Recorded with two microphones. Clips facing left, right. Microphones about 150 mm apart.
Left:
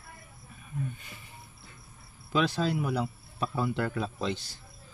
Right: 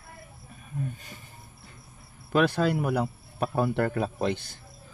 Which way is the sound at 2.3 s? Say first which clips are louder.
Right 4 dB; 55° right (ahead or behind).